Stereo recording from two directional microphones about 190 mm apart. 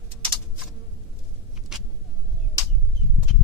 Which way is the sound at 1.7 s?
Centre (ahead or behind).